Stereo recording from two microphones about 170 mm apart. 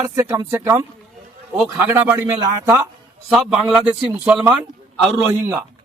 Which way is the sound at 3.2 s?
5° right (ahead or behind).